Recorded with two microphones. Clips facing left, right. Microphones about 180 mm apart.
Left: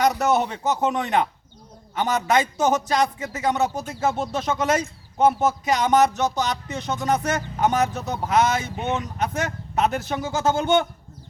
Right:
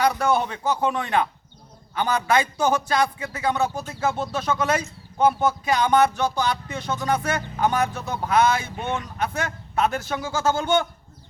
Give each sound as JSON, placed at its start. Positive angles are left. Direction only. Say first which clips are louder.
{"t": 0.0, "sound": "speech", "louder": "left 1 dB", "side_deg": 20}